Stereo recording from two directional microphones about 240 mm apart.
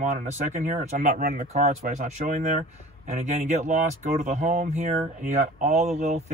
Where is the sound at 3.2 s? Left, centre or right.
Right.